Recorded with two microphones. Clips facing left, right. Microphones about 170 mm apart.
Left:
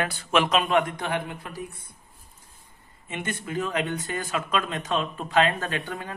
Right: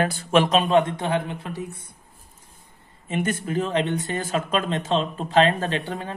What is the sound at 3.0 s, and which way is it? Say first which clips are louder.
Speech: right 7 dB; 40° right (ahead or behind).